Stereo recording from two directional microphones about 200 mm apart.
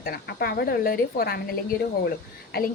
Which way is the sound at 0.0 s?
50° left (ahead or behind).